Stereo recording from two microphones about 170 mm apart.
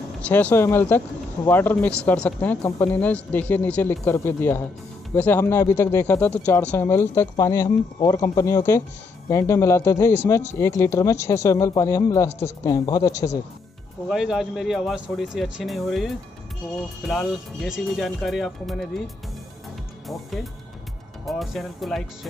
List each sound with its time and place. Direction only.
0.2 s speech: 10° left (ahead or behind)
12.3 s a woman's voice: 40° left (ahead or behind)
12.6 s speech: 20° left (ahead or behind)
14.0 s speech: centre (ahead or behind)
20.1 s speech: centre (ahead or behind)